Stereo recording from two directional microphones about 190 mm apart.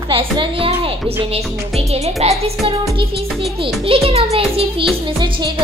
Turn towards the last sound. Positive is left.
turn(degrees=-30)  # may be behind; listen again after turning